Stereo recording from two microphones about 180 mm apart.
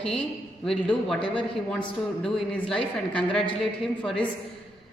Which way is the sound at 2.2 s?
5° left (ahead or behind).